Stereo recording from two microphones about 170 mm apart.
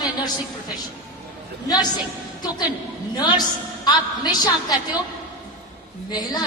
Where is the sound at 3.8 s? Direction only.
25° left (ahead or behind).